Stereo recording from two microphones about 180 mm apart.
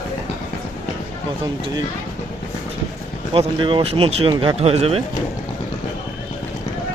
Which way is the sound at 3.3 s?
30° right (ahead or behind).